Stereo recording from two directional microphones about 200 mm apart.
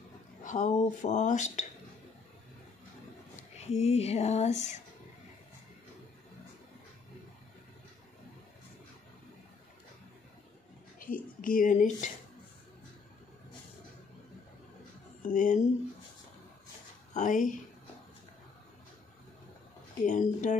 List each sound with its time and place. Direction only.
0.4 s speech: 40° left (ahead or behind)
3.3 s speech: 35° left (ahead or behind)
11.0 s speech: 45° left (ahead or behind)
15.2 s speech: 40° left (ahead or behind)
17.1 s speech: 40° left (ahead or behind)
20.1 s speech: 40° left (ahead or behind)